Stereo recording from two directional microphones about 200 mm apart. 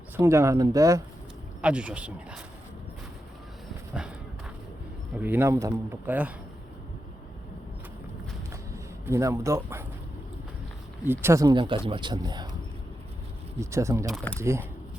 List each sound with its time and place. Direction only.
0.2 s speech: 15° right (ahead or behind)
1.6 s speech: 5° right (ahead or behind)
5.1 s speech: 10° right (ahead or behind)
8.7 s speech: 15° right (ahead or behind)
11.0 s speech: 10° right (ahead or behind)
13.6 s speech: 15° right (ahead or behind)